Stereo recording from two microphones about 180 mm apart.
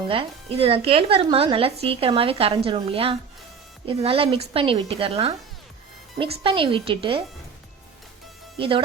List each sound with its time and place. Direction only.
0.1 s speech: 30° right (ahead or behind)
8.5 s speech: 30° right (ahead or behind)